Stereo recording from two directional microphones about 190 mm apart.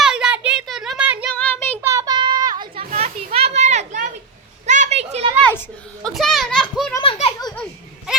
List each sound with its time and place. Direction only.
0.0 s a sound: 5° right (ahead or behind)
1.3 s child singing: 10° left (ahead or behind)
1.8 s children playing: 15° right (ahead or behind)
2.9 s children playing: 35° right (ahead or behind)
6.0 s children playing: centre (ahead or behind)
7.0 s baby laughter: 30° left (ahead or behind)